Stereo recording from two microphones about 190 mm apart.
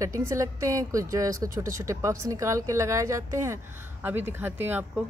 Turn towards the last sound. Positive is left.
turn(degrees=-10)  # may be behind; listen again after turning